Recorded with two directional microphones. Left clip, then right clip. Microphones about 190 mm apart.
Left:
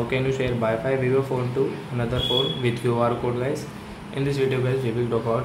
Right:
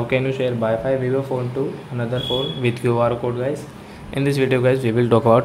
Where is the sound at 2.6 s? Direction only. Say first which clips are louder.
Right 4 dB; 30° right (ahead or behind).